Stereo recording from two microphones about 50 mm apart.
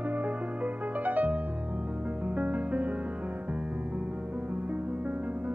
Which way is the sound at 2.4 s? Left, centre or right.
Right.